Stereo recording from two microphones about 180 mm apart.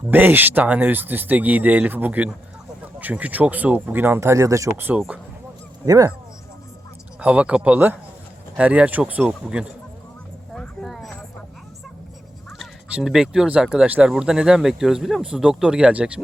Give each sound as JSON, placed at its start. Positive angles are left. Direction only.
{"t": 0.1, "sound": "speech", "side_deg": -10}
{"t": 5.8, "sound": "speech", "side_deg": -20}
{"t": 7.2, "sound": "speech", "side_deg": -5}
{"t": 10.5, "sound": "a sound", "side_deg": 0}
{"t": 12.5, "sound": "speech", "side_deg": 0}